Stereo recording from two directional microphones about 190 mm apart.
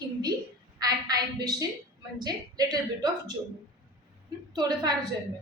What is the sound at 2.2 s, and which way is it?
A woman's voice, 20° right (ahead or behind).